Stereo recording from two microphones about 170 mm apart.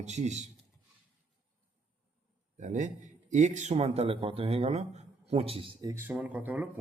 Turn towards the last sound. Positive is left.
turn(degrees=-10)  # may be behind; listen again after turning